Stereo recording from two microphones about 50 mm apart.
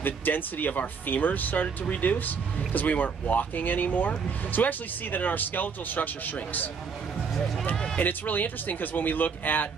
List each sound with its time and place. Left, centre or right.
0.0 s speech: left
7.7 s speech: centre
8.0 s speech: left